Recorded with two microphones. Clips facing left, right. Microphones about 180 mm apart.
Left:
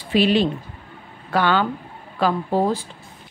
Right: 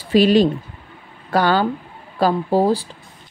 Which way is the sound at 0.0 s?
40° right (ahead or behind).